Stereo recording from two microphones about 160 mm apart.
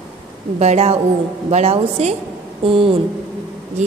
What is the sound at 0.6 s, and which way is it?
A woman's voice, 40° right (ahead or behind).